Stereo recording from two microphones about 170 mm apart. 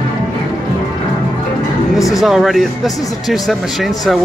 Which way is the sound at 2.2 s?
Centre (ahead or behind).